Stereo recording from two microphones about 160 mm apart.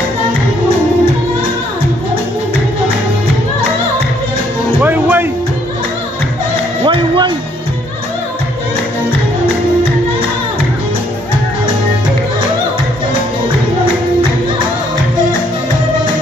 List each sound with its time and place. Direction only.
4.7 s music: 10° right (ahead or behind)
6.8 s music: 30° right (ahead or behind)